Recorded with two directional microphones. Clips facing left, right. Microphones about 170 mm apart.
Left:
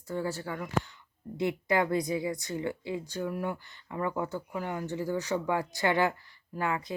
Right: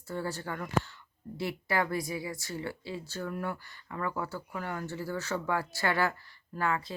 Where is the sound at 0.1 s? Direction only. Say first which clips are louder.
Left 2 dB; 10° left (ahead or behind).